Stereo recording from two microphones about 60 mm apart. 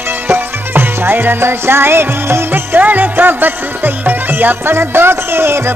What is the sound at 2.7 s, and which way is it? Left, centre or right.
Music, right.